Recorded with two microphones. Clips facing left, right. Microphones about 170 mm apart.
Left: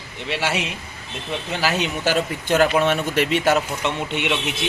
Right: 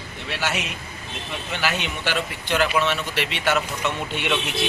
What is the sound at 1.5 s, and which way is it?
A man's voice, 35° left (ahead or behind).